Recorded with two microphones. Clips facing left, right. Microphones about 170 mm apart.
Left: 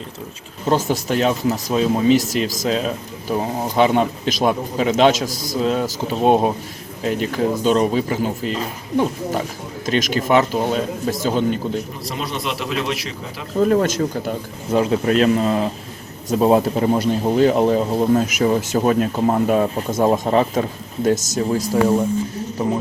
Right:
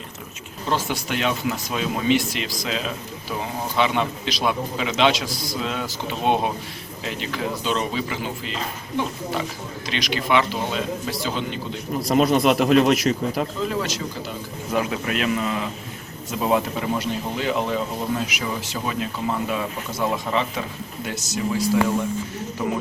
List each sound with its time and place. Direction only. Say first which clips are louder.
0.7 s speech: left 6 dB; 40° left (ahead or behind)
9.8 s speech: left 7 dB; 45° left (ahead or behind)
12.0 s a man's voice: right 8 dB; 45° right (ahead or behind)
13.6 s speech: left 9 dB; 50° left (ahead or behind)
14.7 s speech: left 7 dB; 30° left (ahead or behind)